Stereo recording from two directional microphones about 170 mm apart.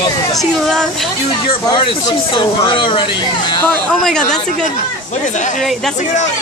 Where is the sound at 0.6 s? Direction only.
Centre (ahead or behind).